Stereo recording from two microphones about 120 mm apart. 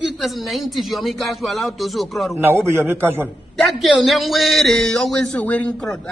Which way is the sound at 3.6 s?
Centre (ahead or behind).